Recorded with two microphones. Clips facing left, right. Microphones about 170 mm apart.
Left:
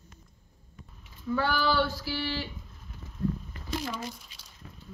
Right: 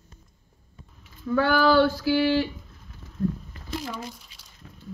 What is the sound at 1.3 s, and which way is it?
Female singing, 55° right (ahead or behind).